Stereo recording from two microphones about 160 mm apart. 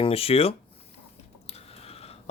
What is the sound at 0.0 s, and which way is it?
Speech, 35° left (ahead or behind).